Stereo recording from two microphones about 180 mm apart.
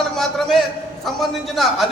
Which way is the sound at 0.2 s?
Centre (ahead or behind).